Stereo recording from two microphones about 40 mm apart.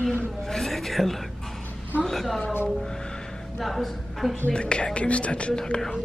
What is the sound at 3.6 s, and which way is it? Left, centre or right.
Speech, centre.